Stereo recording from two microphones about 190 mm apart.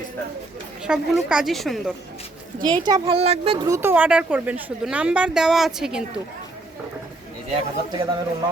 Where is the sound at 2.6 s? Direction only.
20° right (ahead or behind).